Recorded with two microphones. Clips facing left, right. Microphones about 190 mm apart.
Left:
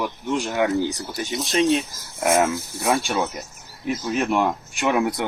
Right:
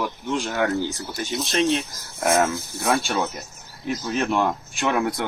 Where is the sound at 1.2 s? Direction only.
Centre (ahead or behind).